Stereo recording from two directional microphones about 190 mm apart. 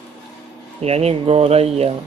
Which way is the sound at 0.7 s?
35° right (ahead or behind).